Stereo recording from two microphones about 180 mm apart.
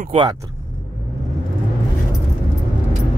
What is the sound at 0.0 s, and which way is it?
Speech, 35° right (ahead or behind).